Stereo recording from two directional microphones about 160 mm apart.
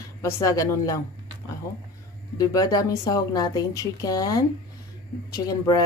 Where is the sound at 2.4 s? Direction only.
25° left (ahead or behind).